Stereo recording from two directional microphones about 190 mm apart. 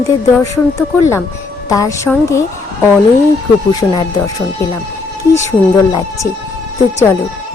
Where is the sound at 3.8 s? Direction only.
20° left (ahead or behind).